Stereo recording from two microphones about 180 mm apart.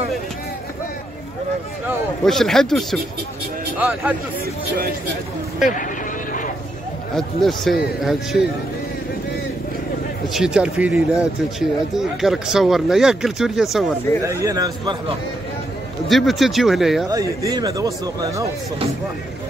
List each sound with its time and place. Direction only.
2.2 s speech: centre (ahead or behind)
3.7 s speech: 10° right (ahead or behind)
7.2 s speech: centre (ahead or behind)
10.3 s speech: 5° right (ahead or behind)
14.2 s speech: 15° right (ahead or behind)
16.1 s speech: centre (ahead or behind)
17.1 s speech: 20° right (ahead or behind)